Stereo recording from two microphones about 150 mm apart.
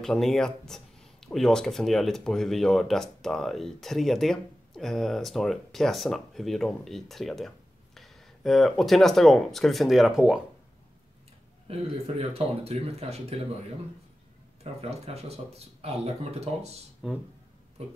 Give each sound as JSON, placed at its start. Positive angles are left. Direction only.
{"t": 0.0, "sound": "speech", "side_deg": 0}
{"t": 12.2, "sound": "speech", "side_deg": -40}
{"t": 14.6, "sound": "speech", "side_deg": -45}
{"t": 17.0, "sound": "speech", "side_deg": -5}